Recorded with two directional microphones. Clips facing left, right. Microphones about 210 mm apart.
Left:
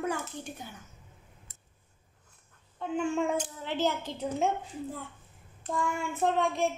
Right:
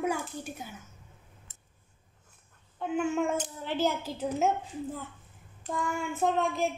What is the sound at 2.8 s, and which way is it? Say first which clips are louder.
A woman's voice: right 1 dB; 5° right (ahead or behind).